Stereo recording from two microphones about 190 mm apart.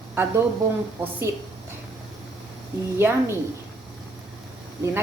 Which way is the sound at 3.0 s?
10° right (ahead or behind).